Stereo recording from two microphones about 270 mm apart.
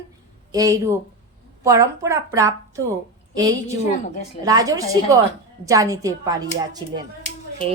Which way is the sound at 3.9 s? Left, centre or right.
Left.